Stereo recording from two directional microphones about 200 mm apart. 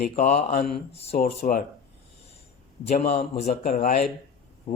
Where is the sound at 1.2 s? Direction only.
45° left (ahead or behind).